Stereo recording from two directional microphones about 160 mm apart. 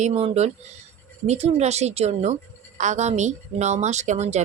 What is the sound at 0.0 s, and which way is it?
A woman's voice, 45° right (ahead or behind).